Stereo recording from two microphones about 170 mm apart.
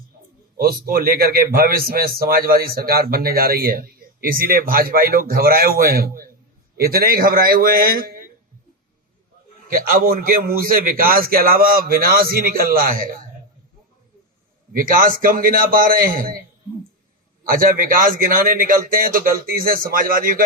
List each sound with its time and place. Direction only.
0.5 s a man's voice: 60° right (ahead or behind)
9.6 s a man's voice: 55° right (ahead or behind)
14.7 s a man's voice: 55° right (ahead or behind)
17.5 s a man's voice: 55° right (ahead or behind)